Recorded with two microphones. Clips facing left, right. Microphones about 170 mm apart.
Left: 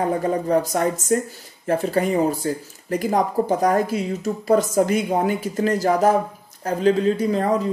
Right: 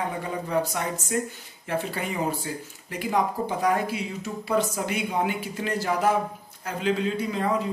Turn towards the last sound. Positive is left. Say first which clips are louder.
# left 6 dB
turn(degrees=40)  # may be behind; listen again after turning